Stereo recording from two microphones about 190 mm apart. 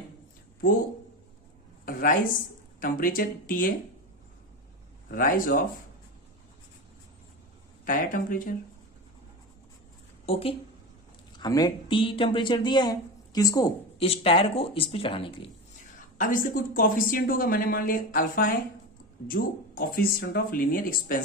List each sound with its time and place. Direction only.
1.9 s a woman's voice: 45° left (ahead or behind)
5.0 s a woman's voice: 50° left (ahead or behind)
7.8 s a woman's voice: 45° left (ahead or behind)
10.2 s speech: 30° left (ahead or behind)
11.3 s speech: 20° left (ahead or behind)
13.9 s speech: 30° left (ahead or behind)
16.0 s a woman's voice: 45° left (ahead or behind)